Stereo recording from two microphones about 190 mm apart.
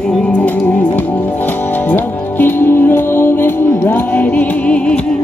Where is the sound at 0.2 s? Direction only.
5° left (ahead or behind).